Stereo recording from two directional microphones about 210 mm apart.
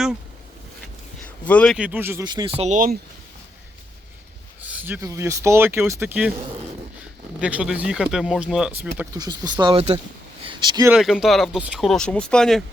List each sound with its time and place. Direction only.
1.5 s speech: 5° left (ahead or behind); by 3.0 s 40° right (ahead or behind)
4.6 s speech: 5° right (ahead or behind)
7.4 s speech: 5° right (ahead or behind); by 10.8 s 20° right (ahead or behind)
10.8 s speech: 5° right (ahead or behind)